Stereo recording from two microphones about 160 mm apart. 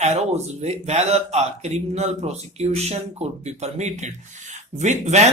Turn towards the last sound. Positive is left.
turn(degrees=-45)  # may be behind; listen again after turning